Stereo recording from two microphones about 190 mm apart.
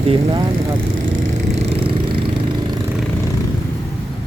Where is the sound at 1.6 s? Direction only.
30° right (ahead or behind).